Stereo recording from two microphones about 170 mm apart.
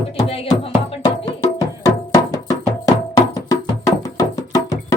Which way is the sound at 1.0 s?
20° left (ahead or behind).